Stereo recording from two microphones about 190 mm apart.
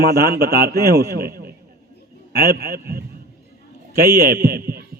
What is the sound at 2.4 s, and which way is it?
Speech, 55° right (ahead or behind).